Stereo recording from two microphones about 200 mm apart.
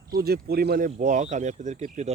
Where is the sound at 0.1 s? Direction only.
50° right (ahead or behind).